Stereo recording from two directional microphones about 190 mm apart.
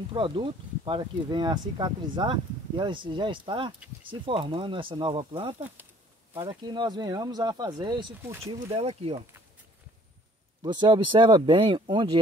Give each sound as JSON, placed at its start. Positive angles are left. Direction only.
{"t": 0.1, "sound": "speech", "side_deg": -25}
{"t": 10.6, "sound": "speech", "side_deg": -20}